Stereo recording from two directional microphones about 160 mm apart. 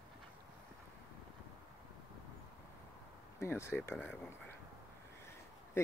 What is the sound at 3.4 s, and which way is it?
Speech, 15° left (ahead or behind).